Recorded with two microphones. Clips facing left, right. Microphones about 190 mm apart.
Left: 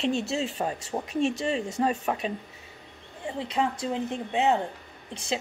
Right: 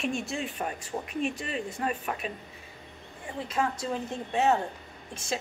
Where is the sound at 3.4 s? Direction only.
20° left (ahead or behind).